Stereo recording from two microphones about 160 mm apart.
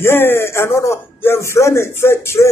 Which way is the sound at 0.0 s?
15° left (ahead or behind).